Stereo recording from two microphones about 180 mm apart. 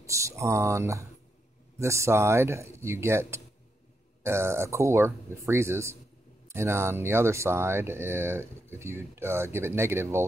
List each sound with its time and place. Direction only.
0.0 s speech: 15° right (ahead or behind)